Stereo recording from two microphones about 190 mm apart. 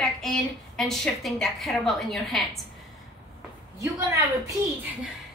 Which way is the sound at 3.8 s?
15° right (ahead or behind).